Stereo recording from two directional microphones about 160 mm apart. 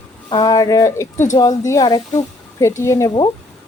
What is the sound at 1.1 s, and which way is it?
Speech, 50° left (ahead or behind).